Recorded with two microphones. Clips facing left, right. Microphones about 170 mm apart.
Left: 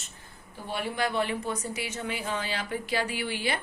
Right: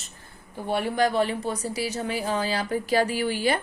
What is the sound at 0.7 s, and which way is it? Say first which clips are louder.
A woman's voice: right 7 dB; 40° right (ahead or behind).